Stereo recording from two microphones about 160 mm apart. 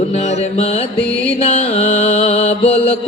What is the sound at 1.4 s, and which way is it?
Mantra, 40° left (ahead or behind).